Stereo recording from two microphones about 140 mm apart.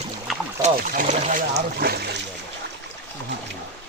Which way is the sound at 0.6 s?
60° right (ahead or behind).